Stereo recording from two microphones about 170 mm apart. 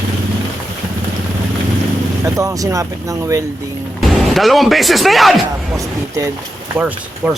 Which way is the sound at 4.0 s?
Centre (ahead or behind).